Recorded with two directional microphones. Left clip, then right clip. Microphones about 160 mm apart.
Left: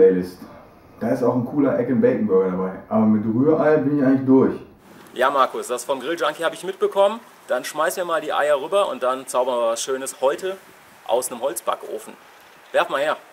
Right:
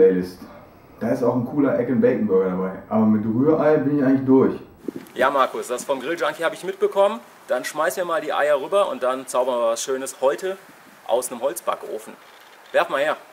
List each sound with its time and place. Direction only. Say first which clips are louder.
0.0 s a man's voice: left 1 dB; 5° right (ahead or behind)